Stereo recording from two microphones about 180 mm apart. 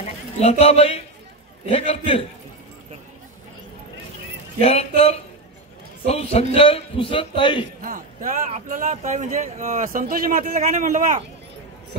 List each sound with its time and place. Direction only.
0.0 s a man's voice: 35° left (ahead or behind)
4.6 s a man's voice: 35° left (ahead or behind)
7.8 s speech: 45° right (ahead or behind)